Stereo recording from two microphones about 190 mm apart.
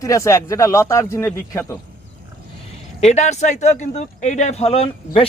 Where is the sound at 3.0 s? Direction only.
35° left (ahead or behind).